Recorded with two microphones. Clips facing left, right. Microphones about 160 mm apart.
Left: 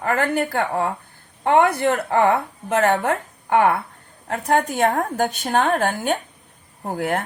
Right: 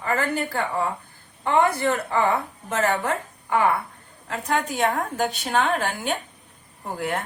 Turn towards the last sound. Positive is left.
turn(degrees=55)  # may be behind; listen again after turning